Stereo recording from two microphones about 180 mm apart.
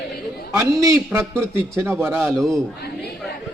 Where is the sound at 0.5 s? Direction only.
20° right (ahead or behind).